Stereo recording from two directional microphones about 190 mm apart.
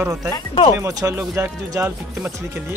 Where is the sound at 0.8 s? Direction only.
20° right (ahead or behind).